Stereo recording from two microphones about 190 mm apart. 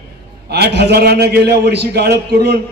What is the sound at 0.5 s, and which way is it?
A man's voice, 60° right (ahead or behind).